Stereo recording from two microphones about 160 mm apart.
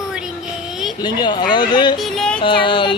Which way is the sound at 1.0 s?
25° left (ahead or behind).